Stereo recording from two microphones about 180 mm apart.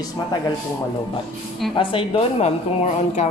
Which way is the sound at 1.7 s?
30° left (ahead or behind).